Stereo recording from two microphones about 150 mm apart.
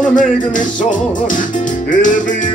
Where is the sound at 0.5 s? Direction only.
60° left (ahead or behind).